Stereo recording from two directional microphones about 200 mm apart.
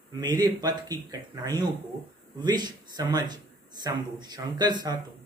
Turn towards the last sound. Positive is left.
turn(degrees=-20)  # may be behind; listen again after turning